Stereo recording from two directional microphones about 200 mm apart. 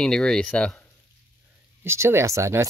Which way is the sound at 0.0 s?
5° left (ahead or behind).